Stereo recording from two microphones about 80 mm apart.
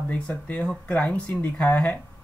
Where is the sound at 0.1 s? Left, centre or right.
Centre.